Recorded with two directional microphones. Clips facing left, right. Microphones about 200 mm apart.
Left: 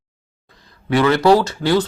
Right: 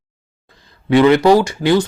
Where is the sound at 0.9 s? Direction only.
20° right (ahead or behind).